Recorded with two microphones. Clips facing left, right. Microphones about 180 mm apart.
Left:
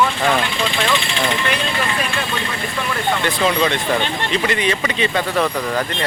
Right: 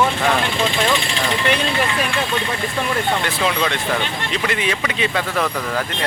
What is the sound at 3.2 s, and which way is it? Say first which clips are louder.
Speech: left 3 dB; centre (ahead or behind).